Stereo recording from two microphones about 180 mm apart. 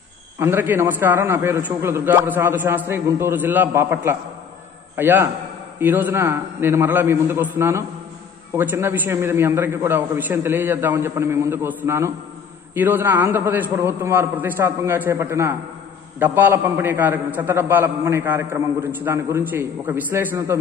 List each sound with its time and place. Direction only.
0.4 s a man's voice: 10° right (ahead or behind)